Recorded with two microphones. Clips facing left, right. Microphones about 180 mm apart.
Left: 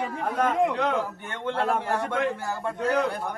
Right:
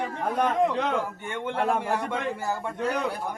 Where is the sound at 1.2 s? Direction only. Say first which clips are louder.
Even; 10° right (ahead or behind).